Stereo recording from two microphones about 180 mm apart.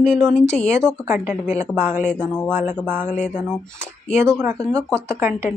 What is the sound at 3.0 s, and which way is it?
Speech, 45° left (ahead or behind).